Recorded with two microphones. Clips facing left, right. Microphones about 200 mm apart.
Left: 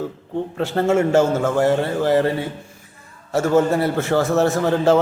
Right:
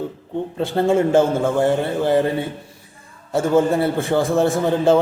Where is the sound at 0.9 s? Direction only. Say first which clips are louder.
Even; 15° right (ahead or behind).